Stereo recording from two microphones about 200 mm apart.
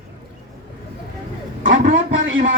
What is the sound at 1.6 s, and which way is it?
Speech, 40° right (ahead or behind).